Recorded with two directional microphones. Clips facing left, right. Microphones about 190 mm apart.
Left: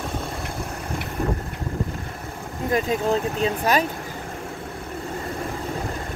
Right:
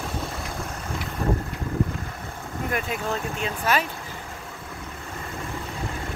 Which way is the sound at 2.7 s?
35° left (ahead or behind).